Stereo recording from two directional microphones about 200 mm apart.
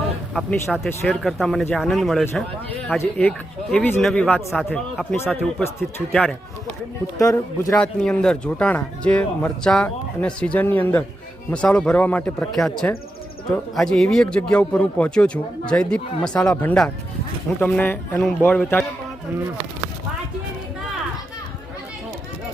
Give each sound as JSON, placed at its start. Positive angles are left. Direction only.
{"t": 0.9, "sound": "a man's voice", "side_deg": 0}
{"t": 8.0, "sound": "a man's voice", "side_deg": 5}